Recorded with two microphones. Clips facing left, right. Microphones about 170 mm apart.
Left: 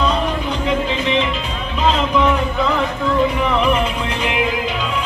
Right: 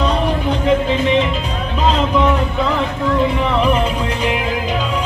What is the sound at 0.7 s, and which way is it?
Music, 45° right (ahead or behind).